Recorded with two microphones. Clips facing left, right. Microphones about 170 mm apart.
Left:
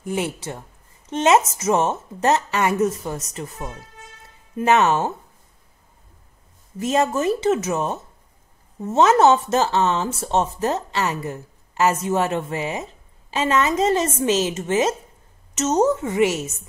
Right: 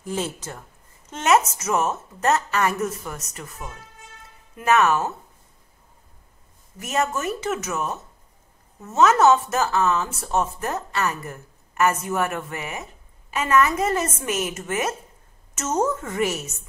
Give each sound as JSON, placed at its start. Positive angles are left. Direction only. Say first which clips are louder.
{"t": 1.1, "sound": "speech", "louder": "left 3 dB", "side_deg": 25}
{"t": 6.8, "sound": "speech", "louder": "left 5 dB", "side_deg": 30}